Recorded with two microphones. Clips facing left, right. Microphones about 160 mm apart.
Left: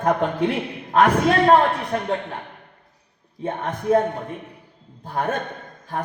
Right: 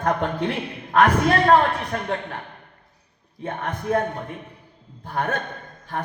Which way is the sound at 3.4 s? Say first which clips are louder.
Left 2 dB; 25° left (ahead or behind).